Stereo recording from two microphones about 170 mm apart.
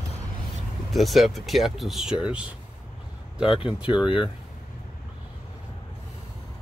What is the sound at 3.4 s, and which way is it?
Speech, 30° left (ahead or behind).